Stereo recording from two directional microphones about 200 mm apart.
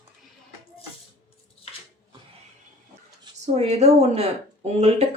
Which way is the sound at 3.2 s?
30° right (ahead or behind).